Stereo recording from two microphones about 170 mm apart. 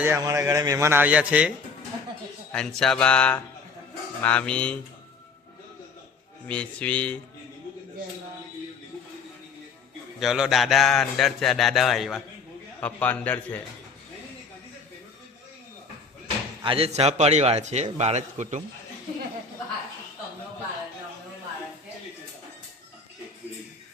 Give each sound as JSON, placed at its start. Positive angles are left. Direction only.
{"t": 0.0, "sound": "a man's voice", "side_deg": -15}
{"t": 2.5, "sound": "speech", "side_deg": 5}
{"t": 6.5, "sound": "speech", "side_deg": 5}
{"t": 10.2, "sound": "speech", "side_deg": 0}
{"t": 16.6, "sound": "a man's voice", "side_deg": -35}